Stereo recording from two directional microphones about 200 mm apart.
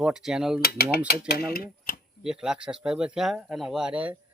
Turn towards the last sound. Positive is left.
turn(degrees=-5)  # may be behind; listen again after turning